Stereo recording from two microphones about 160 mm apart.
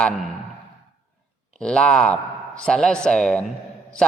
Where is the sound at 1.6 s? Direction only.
5° left (ahead or behind).